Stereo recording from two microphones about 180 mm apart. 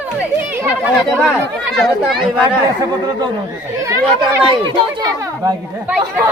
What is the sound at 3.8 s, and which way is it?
Speech, 15° right (ahead or behind).